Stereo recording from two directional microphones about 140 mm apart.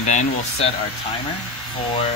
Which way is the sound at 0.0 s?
55° left (ahead or behind).